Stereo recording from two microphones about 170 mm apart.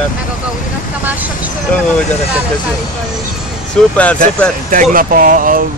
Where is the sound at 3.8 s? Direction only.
5° left (ahead or behind).